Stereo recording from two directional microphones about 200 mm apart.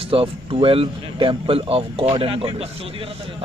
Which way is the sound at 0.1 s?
25° right (ahead or behind).